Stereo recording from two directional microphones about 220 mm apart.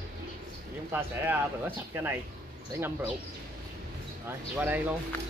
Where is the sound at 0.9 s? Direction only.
10° right (ahead or behind).